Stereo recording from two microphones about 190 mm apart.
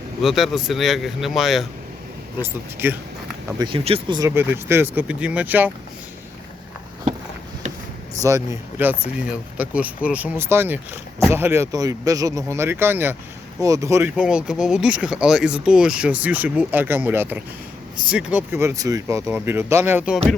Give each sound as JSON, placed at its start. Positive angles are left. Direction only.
{"t": 0.2, "sound": "speech", "side_deg": 0}
{"t": 2.4, "sound": "speech", "side_deg": -10}
{"t": 3.6, "sound": "speech", "side_deg": -25}
{"t": 4.2, "sound": "speech", "side_deg": -10}
{"t": 8.8, "sound": "speech", "side_deg": -10}